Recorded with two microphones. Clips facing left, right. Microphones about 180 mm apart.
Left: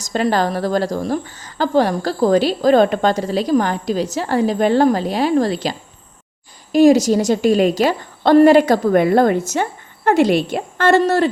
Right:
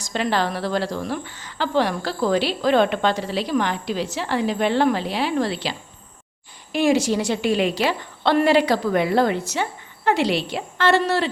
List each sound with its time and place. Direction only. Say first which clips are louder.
0.0 s a woman's voice: left 5 dB; 45° left (ahead or behind)
6.7 s a woman's voice: left 8 dB; 40° left (ahead or behind)